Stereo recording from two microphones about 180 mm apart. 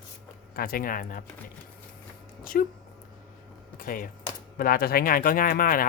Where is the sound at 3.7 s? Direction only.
50° left (ahead or behind).